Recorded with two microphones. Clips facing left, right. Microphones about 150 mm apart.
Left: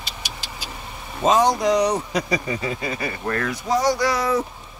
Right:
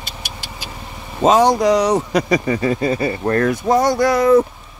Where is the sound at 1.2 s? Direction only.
80° right; by 2.7 s 60° right (ahead or behind).